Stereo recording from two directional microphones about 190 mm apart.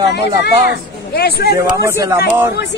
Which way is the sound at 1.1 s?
55° left (ahead or behind).